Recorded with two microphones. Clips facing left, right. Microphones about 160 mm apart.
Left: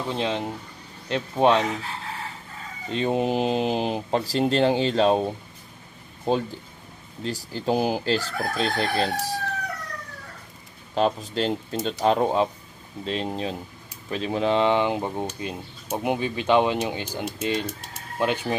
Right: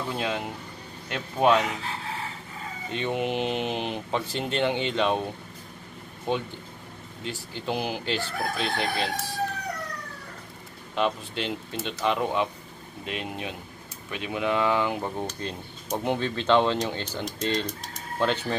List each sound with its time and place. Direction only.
0.1 s speech: 25° left (ahead or behind)
2.9 s speech: 30° left (ahead or behind)
6.3 s speech: 35° left (ahead or behind)
11.0 s speech: 40° left (ahead or behind); by 18.6 s 10° left (ahead or behind)